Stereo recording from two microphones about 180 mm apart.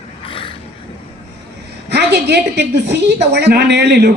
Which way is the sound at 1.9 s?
65° right (ahead or behind).